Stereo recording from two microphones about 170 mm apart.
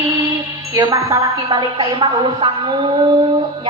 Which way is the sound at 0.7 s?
20° right (ahead or behind).